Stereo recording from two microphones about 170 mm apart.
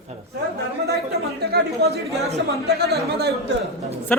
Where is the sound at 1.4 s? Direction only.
70° right (ahead or behind).